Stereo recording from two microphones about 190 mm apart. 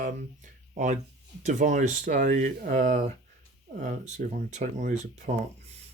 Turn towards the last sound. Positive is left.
turn(degrees=-40)  # may be behind; listen again after turning